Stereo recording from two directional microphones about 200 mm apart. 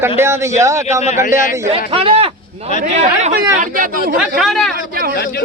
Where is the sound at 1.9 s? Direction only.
30° right (ahead or behind).